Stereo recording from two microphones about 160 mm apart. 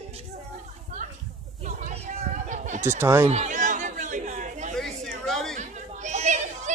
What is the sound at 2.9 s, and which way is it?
Speech, 15° right (ahead or behind).